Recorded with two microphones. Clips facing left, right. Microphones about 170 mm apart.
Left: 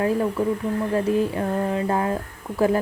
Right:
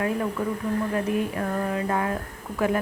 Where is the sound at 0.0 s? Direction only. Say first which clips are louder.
Left 4 dB; 30° left (ahead or behind).